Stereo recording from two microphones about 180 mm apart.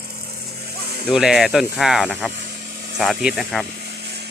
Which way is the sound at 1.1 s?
5° right (ahead or behind).